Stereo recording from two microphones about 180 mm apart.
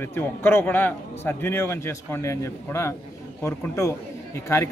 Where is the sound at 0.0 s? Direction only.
10° left (ahead or behind).